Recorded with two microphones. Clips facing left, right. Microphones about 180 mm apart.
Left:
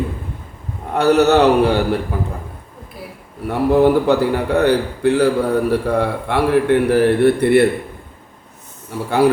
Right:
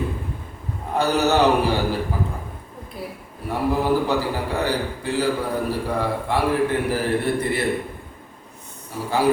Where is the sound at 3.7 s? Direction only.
65° left (ahead or behind).